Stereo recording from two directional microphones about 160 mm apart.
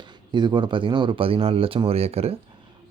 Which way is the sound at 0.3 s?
30° right (ahead or behind).